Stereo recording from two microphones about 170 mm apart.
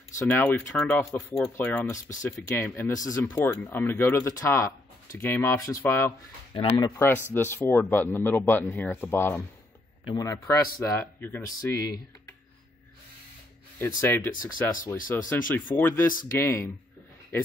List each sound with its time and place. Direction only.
0.3 s speech: 10° left (ahead or behind)
6.5 s speech: 30° left (ahead or behind)
7.0 s speech: 10° left (ahead or behind)
13.7 s speech: 15° left (ahead or behind)
14.3 s speech: 55° left (ahead or behind)
15.1 s speech: 10° left (ahead or behind)